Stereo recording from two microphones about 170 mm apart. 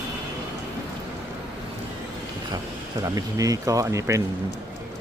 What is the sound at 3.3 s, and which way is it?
Speech, 20° right (ahead or behind).